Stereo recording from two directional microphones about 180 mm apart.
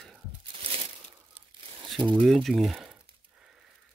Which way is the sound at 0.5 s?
30° right (ahead or behind).